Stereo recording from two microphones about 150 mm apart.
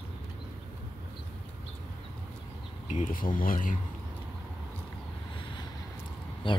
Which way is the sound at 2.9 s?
60° left (ahead or behind).